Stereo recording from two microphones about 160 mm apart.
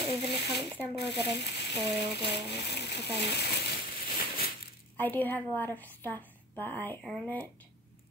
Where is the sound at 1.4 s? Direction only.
90° left.